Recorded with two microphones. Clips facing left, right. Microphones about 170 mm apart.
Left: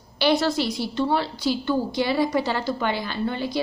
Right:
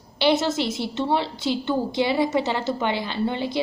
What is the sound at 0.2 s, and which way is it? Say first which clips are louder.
A woman's voice: even; 20° right (ahead or behind).